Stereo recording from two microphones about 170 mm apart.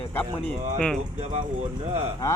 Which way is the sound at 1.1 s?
40° right (ahead or behind).